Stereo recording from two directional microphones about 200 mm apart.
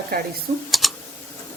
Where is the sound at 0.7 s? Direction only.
Centre (ahead or behind).